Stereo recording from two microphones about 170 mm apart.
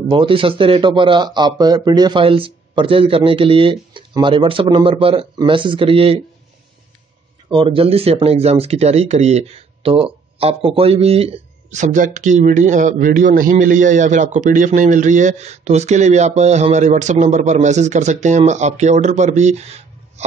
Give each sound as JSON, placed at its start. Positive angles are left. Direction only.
{"t": 0.1, "sound": "a man's voice", "side_deg": -30}
{"t": 7.5, "sound": "a man's voice", "side_deg": -30}